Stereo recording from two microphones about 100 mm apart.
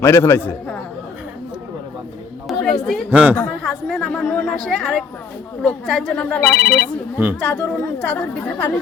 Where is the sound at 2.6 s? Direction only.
5° left (ahead or behind).